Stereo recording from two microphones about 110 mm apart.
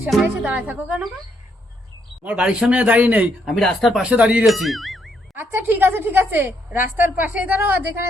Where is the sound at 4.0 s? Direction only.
10° right (ahead or behind).